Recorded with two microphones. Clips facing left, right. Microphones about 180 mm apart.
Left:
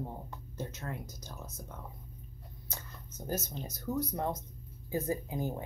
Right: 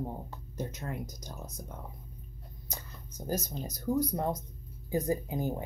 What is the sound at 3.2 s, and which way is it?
Speech, 10° right (ahead or behind).